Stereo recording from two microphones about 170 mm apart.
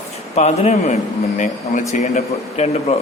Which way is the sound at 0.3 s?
40° left (ahead or behind).